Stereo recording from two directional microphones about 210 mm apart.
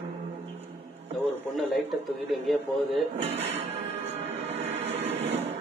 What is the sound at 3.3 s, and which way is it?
Music, 30° right (ahead or behind).